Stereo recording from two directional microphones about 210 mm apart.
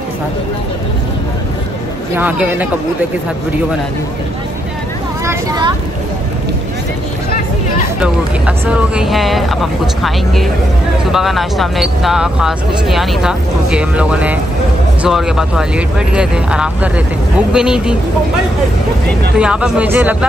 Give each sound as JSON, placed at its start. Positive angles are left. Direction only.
{"t": 2.1, "sound": "speech", "side_deg": -5}
{"t": 5.2, "sound": "speech", "side_deg": -15}
{"t": 8.0, "sound": "speech", "side_deg": -5}
{"t": 19.3, "sound": "speech", "side_deg": -5}